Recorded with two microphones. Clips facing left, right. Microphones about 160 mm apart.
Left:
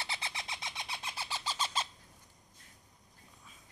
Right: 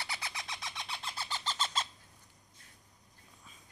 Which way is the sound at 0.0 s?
25° left (ahead or behind).